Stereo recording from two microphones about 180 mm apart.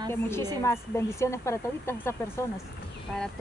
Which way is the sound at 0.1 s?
15° left (ahead or behind).